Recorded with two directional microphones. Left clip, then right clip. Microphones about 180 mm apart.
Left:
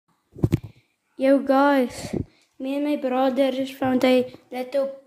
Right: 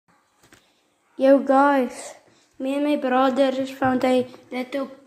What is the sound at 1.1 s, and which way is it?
Speech, 10° left (ahead or behind).